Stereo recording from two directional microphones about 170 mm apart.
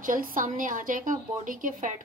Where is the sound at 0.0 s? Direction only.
55° right (ahead or behind).